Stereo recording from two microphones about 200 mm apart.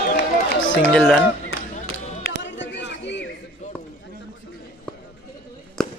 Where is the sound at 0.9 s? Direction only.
5° left (ahead or behind).